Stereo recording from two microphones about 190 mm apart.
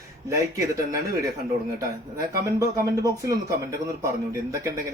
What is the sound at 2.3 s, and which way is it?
Speech, 20° right (ahead or behind).